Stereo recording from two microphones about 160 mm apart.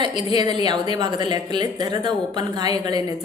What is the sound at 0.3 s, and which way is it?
A woman's voice, 25° right (ahead or behind).